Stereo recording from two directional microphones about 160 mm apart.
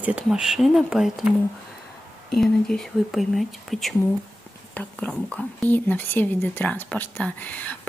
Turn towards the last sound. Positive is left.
turn(degrees=10)  # may be behind; listen again after turning